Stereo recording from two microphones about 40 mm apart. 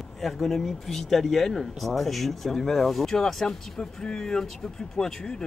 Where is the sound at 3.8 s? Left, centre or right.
Left.